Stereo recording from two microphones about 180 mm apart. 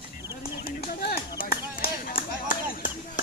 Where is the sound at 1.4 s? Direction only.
55° left (ahead or behind).